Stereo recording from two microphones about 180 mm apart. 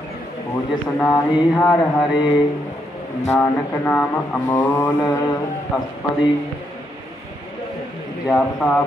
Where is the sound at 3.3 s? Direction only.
10° left (ahead or behind).